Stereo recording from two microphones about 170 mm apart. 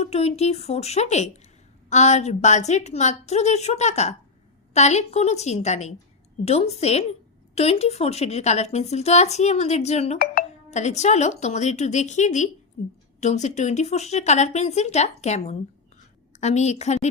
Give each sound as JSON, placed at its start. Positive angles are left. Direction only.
{"t": 0.0, "sound": "a woman's voice", "side_deg": 40}